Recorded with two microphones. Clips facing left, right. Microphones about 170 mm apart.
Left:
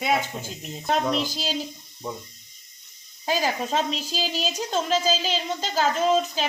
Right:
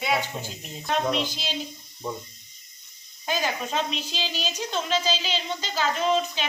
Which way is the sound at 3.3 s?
35° left (ahead or behind).